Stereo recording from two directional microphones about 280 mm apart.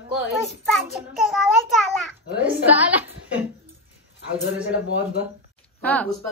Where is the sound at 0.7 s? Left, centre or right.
Centre.